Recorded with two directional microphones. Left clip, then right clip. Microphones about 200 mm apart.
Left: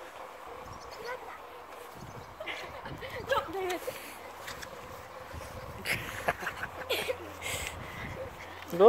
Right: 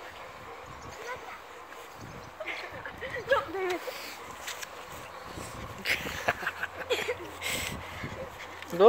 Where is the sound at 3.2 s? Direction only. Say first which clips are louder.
Right 3 dB; 50° left (ahead or behind).